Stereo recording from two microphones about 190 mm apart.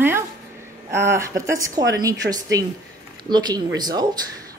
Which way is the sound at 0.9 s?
15° right (ahead or behind).